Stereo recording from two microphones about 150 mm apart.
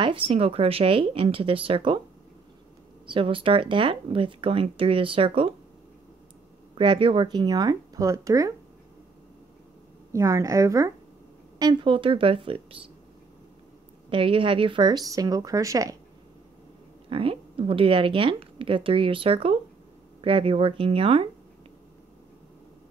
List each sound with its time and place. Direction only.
0.0 s a woman's voice: 35° right (ahead or behind)
3.1 s a woman's voice: 35° right (ahead or behind)
6.8 s speech: 35° right (ahead or behind)
10.1 s a woman's voice: 20° right (ahead or behind); by 12.9 s 40° right (ahead or behind)
14.1 s speech: 35° right (ahead or behind)
17.1 s a woman's voice: 35° right (ahead or behind)